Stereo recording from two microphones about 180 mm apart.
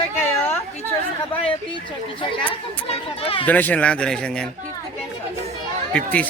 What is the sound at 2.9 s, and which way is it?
Speech, 30° left (ahead or behind).